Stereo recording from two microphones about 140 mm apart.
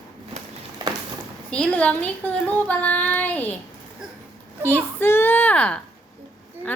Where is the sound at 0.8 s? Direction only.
30° right (ahead or behind).